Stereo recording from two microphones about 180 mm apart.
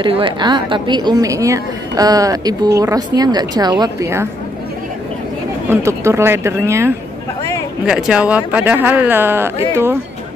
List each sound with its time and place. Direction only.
0.0 s a woman's voice: 30° right (ahead or behind)
5.7 s speech: 15° right (ahead or behind)